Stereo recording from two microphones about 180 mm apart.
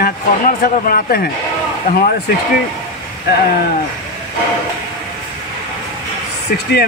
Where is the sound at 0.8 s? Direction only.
55° left (ahead or behind).